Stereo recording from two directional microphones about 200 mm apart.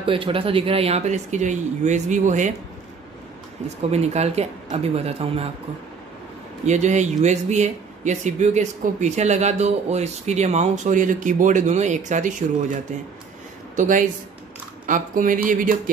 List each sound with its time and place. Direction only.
0.0 s speech: 25° right (ahead or behind)
3.9 s speech: 30° right (ahead or behind)
6.6 s speech: 35° right (ahead or behind)
13.7 s speech: 40° right (ahead or behind)